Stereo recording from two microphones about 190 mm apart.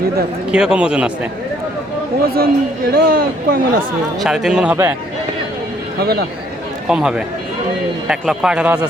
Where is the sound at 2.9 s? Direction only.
50° right (ahead or behind).